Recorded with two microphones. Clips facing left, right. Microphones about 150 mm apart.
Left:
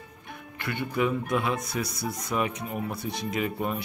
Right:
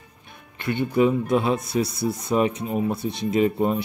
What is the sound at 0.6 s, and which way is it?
Speech, 25° right (ahead or behind).